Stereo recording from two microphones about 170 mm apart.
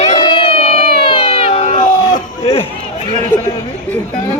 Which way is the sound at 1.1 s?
35° left (ahead or behind).